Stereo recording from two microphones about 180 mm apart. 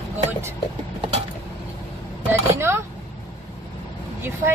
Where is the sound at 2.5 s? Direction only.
15° right (ahead or behind).